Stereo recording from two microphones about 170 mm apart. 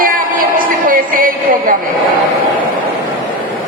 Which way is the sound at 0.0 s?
55° right (ahead or behind).